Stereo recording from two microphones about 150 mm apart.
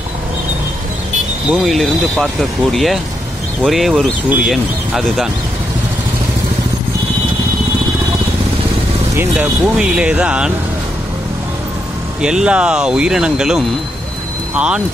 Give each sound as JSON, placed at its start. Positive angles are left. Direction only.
{"t": 1.5, "sound": "speech", "side_deg": 0}
{"t": 9.1, "sound": "speech", "side_deg": -15}
{"t": 12.2, "sound": "speech", "side_deg": -5}